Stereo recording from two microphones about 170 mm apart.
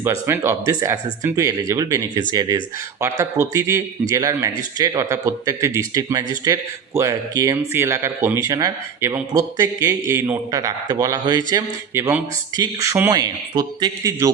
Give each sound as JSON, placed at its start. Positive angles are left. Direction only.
{"t": 0.0, "sound": "a man's voice", "side_deg": -15}